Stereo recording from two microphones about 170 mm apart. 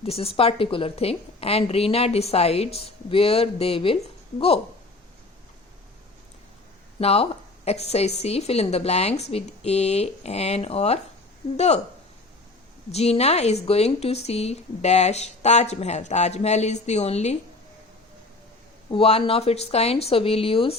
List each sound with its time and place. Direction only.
0.0 s a woman's voice: 35° left (ahead or behind)
7.0 s a woman's voice: 35° left (ahead or behind)
12.9 s a woman's voice: 40° left (ahead or behind)
18.9 s a woman's voice: 35° left (ahead or behind)